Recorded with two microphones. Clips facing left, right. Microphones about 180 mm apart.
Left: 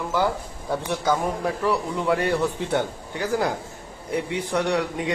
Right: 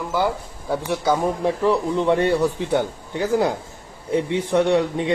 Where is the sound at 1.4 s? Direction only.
20° right (ahead or behind).